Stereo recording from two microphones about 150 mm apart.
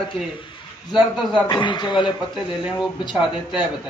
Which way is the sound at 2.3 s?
Centre (ahead or behind).